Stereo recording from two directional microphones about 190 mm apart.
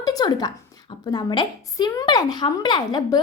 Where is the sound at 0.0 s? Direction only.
20° left (ahead or behind).